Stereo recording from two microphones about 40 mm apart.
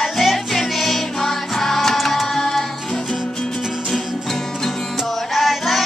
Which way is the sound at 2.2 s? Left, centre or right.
Centre.